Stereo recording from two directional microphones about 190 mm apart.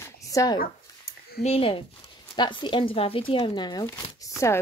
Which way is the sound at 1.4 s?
30° left (ahead or behind).